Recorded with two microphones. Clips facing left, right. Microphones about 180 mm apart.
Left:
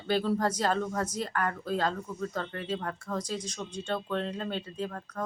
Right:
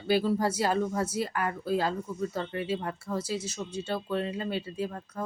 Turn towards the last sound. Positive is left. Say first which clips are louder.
# right 1 dB
turn(degrees=-10)  # may be behind; listen again after turning